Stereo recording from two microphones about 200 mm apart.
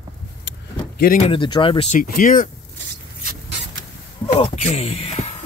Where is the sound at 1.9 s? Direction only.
45° left (ahead or behind).